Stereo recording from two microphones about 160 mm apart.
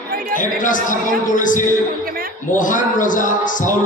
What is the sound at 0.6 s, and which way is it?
A man's voice, 55° left (ahead or behind).